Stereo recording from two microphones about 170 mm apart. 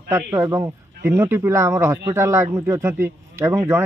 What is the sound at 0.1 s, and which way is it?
A man's voice, 15° right (ahead or behind).